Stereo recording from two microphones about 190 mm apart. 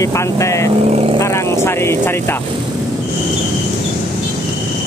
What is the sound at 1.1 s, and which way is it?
Speech, 15° left (ahead or behind).